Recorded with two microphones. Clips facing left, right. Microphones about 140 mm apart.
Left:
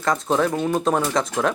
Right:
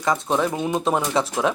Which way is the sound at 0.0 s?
5° right (ahead or behind).